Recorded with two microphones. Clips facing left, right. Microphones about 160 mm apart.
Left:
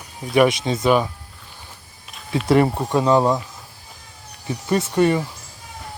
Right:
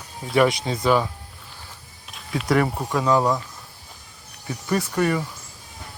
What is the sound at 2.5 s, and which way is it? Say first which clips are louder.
Speech: left 4 dB; 25° left (ahead or behind).